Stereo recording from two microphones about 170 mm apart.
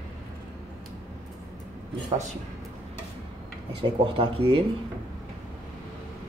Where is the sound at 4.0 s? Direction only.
35° right (ahead or behind).